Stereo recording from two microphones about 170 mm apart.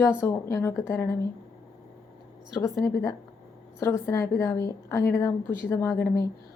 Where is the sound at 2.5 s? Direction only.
20° left (ahead or behind).